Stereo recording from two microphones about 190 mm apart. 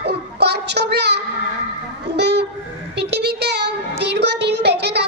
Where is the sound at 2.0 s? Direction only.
60° right (ahead or behind).